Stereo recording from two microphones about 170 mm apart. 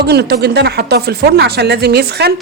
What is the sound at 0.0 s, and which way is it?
Speech, 70° right (ahead or behind).